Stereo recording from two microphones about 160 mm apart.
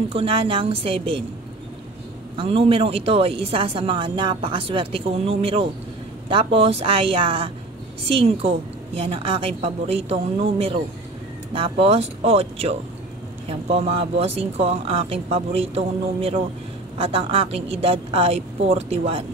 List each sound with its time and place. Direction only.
0.1 s a woman's voice: 35° right (ahead or behind)
2.3 s a woman's voice: 35° right (ahead or behind)